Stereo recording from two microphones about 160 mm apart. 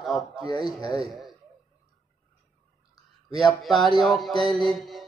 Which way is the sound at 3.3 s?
Centre (ahead or behind).